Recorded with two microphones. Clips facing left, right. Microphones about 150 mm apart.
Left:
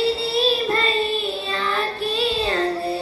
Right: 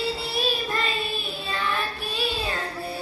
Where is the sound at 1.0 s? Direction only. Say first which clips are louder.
Left 8 dB; 10° right (ahead or behind).